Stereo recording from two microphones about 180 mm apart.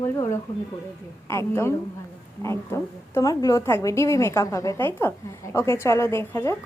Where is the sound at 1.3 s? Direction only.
15° left (ahead or behind).